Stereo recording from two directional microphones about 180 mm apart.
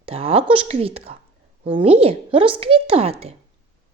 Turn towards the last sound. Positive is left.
turn(degrees=-35)  # may be behind; listen again after turning